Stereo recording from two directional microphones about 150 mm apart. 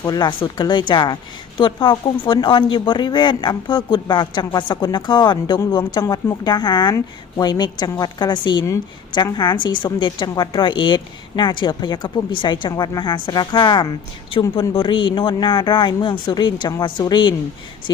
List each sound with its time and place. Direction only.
0.0 s a woman's voice: 25° left (ahead or behind)